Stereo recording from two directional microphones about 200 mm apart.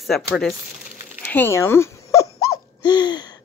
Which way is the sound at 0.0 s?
Centre (ahead or behind).